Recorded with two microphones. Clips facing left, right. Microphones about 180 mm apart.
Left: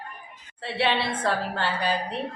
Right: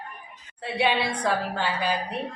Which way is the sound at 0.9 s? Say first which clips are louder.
Right 1 dB; 15° right (ahead or behind).